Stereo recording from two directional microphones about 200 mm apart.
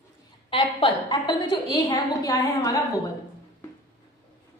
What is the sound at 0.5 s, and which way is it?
A woman's voice, 25° left (ahead or behind).